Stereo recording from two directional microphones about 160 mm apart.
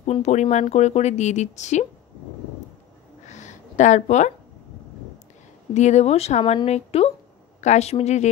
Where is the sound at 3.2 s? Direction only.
45° left (ahead or behind).